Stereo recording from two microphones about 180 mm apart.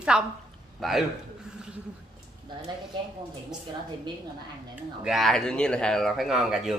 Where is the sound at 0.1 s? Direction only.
5° right (ahead or behind).